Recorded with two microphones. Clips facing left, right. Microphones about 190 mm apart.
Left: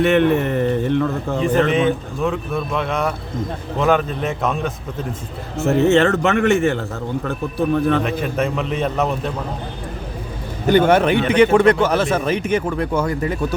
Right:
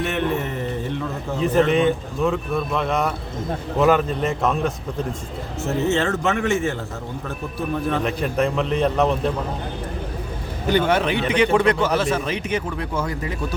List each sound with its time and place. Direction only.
0.0 s a sound: 70° left (ahead or behind)
1.4 s speech: centre (ahead or behind)
5.6 s a man's voice: 65° left (ahead or behind)
8.0 s speech: centre (ahead or behind)
10.7 s speech: 50° left (ahead or behind)